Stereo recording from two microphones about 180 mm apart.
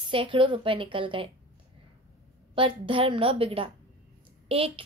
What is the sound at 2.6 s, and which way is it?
A woman's voice, 30° right (ahead or behind).